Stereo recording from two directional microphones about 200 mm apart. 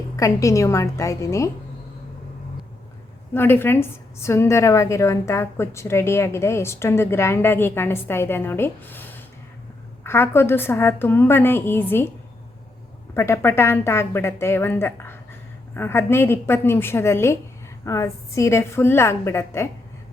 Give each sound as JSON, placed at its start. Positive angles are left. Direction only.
{"t": 0.2, "sound": "a woman's voice", "side_deg": 15}
{"t": 3.3, "sound": "a woman's voice", "side_deg": 10}
{"t": 13.1, "sound": "a woman's voice", "side_deg": 10}